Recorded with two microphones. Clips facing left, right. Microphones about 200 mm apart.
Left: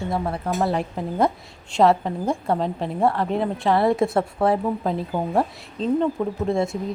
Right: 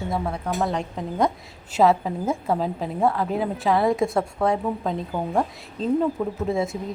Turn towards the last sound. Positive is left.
turn(degrees=0)  # may be behind; listen again after turning